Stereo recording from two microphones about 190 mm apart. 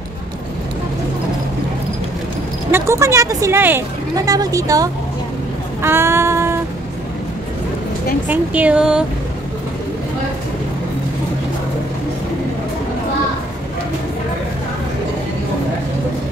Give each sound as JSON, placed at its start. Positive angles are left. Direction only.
{"t": 2.7, "sound": "speech", "side_deg": -15}
{"t": 5.8, "sound": "child singing", "side_deg": -15}
{"t": 8.3, "sound": "speech", "side_deg": -5}